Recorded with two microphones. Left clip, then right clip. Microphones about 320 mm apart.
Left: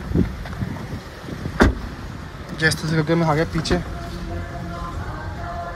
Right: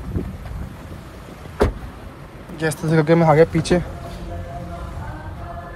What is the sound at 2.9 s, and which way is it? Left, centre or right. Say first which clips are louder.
Speech: right 5 dB; centre.